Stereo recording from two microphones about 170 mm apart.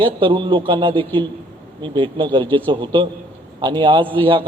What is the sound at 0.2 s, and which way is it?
A man's voice, 30° right (ahead or behind).